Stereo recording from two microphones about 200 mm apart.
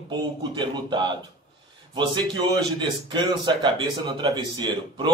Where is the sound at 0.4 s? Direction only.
20° right (ahead or behind).